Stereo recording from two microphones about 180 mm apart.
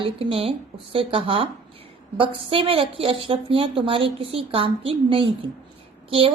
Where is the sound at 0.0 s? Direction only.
30° right (ahead or behind).